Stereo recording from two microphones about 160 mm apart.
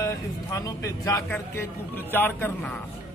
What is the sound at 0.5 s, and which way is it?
Speech, 20° left (ahead or behind).